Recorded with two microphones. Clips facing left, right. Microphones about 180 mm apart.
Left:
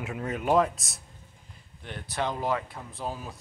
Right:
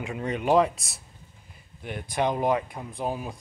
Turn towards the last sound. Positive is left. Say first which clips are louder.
# right 5 dB
turn(degrees=-15)  # may be behind; listen again after turning